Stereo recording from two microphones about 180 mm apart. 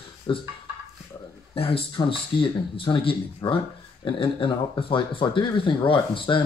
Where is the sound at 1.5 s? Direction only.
30° left (ahead or behind).